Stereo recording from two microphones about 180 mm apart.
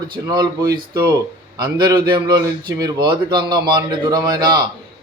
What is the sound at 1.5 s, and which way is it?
A man's voice, 25° right (ahead or behind).